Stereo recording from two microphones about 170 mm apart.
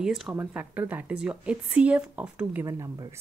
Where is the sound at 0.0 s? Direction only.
5° right (ahead or behind).